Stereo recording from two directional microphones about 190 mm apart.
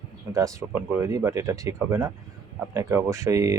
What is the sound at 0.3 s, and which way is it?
Speech, 15° right (ahead or behind).